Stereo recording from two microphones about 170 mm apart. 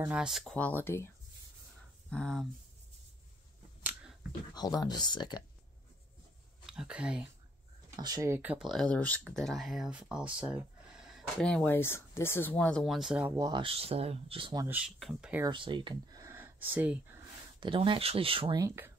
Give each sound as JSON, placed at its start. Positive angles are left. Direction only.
{"t": 0.1, "sound": "speech", "side_deg": -5}
{"t": 4.6, "sound": "speech", "side_deg": 25}
{"t": 6.6, "sound": "speech", "side_deg": -5}
{"t": 8.0, "sound": "speech", "side_deg": -20}
{"t": 8.6, "sound": "speech", "side_deg": 5}
{"t": 13.4, "sound": "speech", "side_deg": -25}
{"t": 14.7, "sound": "speech", "side_deg": -5}
{"t": 15.4, "sound": "speech", "side_deg": -30}
{"t": 17.6, "sound": "speech", "side_deg": -30}